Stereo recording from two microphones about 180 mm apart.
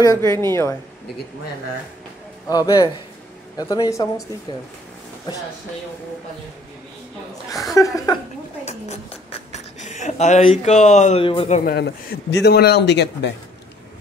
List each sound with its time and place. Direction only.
0.0 s a woman's voice: 20° left (ahead or behind)
2.4 s speech: 20° left (ahead or behind)
7.7 s a woman's voice: 15° left (ahead or behind)
8.6 s speech: 35° left (ahead or behind)
11.6 s speech: 60° left (ahead or behind)